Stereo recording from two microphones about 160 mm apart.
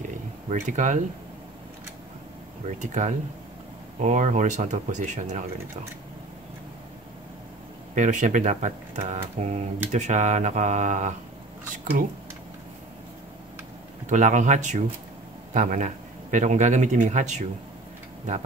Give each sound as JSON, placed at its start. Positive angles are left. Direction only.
{"t": 0.5, "sound": "speech", "side_deg": -50}
{"t": 2.6, "sound": "speech", "side_deg": -45}
{"t": 7.9, "sound": "speech", "side_deg": -50}
{"t": 14.0, "sound": "a man's voice", "side_deg": -50}